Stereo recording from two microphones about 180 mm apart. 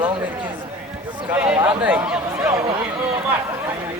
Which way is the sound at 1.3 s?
5° right (ahead or behind).